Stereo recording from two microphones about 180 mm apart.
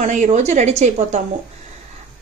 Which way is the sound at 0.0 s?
40° right (ahead or behind).